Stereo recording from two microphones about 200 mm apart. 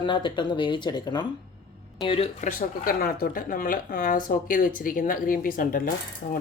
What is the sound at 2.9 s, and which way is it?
Speech, 50° left (ahead or behind).